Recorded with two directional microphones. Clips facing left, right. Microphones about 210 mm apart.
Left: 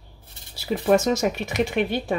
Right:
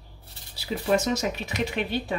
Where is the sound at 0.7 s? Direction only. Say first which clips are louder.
Left 5 dB; 50° left (ahead or behind).